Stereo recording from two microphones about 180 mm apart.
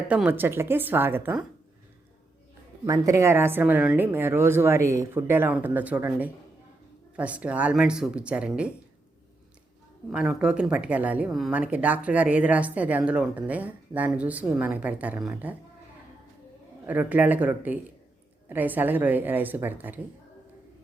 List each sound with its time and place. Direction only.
0.1 s speech: 10° right (ahead or behind)
2.8 s speech: 15° right (ahead or behind)
10.1 s speech: 5° right (ahead or behind)
16.8 s speech: 10° right (ahead or behind)